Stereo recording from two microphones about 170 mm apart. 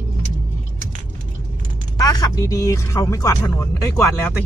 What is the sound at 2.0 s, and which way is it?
Speech, 20° left (ahead or behind).